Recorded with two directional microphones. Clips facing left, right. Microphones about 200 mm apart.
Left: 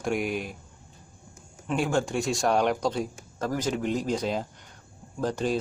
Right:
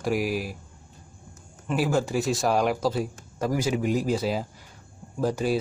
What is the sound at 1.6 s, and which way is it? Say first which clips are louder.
A man's voice: right 1 dB; 5° right (ahead or behind).